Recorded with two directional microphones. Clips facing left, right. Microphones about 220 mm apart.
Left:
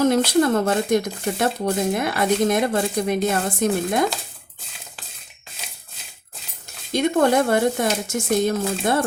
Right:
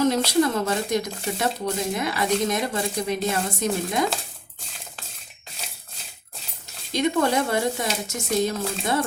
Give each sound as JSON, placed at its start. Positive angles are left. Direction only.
{"t": 0.0, "sound": "speech", "side_deg": 50}
{"t": 6.9, "sound": "speech", "side_deg": 50}